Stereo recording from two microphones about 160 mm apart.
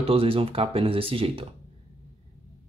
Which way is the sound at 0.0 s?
35° right (ahead or behind).